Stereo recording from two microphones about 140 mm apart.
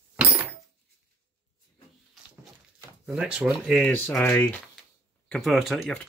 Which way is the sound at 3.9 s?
15° left (ahead or behind).